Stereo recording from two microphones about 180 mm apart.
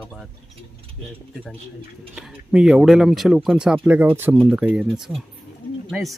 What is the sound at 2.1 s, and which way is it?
Speech, 5° right (ahead or behind).